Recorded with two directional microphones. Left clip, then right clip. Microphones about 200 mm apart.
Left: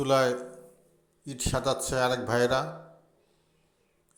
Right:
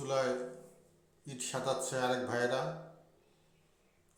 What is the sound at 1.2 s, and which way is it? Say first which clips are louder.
Speech: left 8 dB; 25° left (ahead or behind).